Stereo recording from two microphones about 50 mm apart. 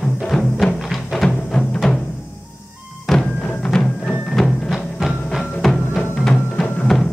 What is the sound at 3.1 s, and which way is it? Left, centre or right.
Music, centre.